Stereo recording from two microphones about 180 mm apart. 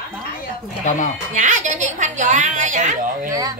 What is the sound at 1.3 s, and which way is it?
A woman's voice, 45° right (ahead or behind).